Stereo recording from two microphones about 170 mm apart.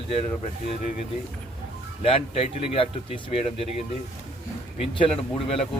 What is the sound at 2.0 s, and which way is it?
A man's voice, 35° left (ahead or behind).